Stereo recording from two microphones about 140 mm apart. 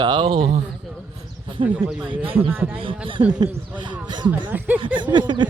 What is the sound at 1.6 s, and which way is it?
Speech, 40° right (ahead or behind).